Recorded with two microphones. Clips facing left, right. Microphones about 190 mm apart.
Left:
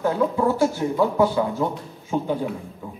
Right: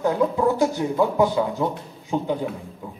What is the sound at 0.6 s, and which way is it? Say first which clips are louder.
Speech: even; 15° right (ahead or behind).